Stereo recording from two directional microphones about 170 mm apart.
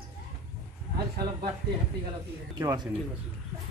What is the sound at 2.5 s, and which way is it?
Speech, 20° right (ahead or behind).